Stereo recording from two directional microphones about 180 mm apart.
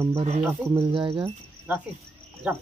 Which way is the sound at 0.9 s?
30° right (ahead or behind).